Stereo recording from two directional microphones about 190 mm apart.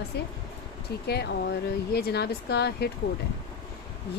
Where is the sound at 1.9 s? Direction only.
55° left (ahead or behind).